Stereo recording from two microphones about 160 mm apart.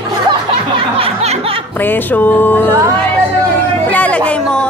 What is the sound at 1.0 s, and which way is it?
Music, 40° right (ahead or behind).